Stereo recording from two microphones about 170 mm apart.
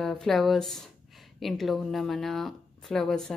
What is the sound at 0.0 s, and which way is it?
Speech, 5° left (ahead or behind).